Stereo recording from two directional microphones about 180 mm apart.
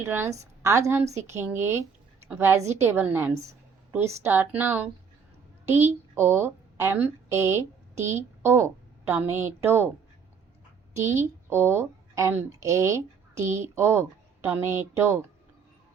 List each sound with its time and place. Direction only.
0.0 s a woman's voice: 10° right (ahead or behind)
11.4 s a woman's voice: 15° right (ahead or behind)